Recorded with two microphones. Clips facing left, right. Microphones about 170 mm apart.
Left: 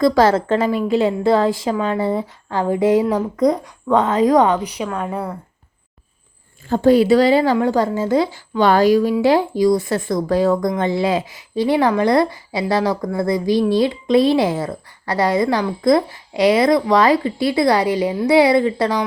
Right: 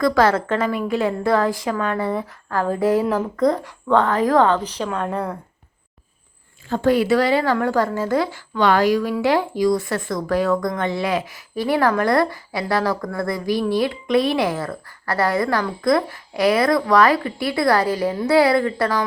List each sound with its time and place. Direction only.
0.0 s a woman's voice: 30° left (ahead or behind); by 5.4 s 5° left (ahead or behind)
6.7 s a woman's voice: 30° left (ahead or behind)